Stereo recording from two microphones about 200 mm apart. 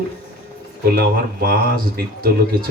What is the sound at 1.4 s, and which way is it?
Speech, 50° right (ahead or behind).